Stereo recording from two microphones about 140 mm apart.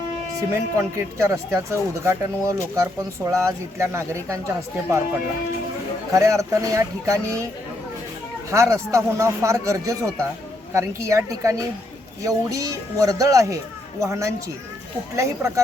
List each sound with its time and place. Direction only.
0.5 s a man's voice: 20° right (ahead or behind)
6.1 s a man's voice: 20° right (ahead or behind)
8.4 s a man's voice: 20° right (ahead or behind)